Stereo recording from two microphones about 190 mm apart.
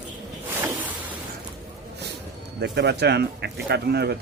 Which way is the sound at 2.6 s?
60° right (ahead or behind).